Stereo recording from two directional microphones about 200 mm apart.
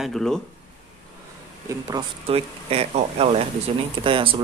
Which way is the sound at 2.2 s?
30° right (ahead or behind).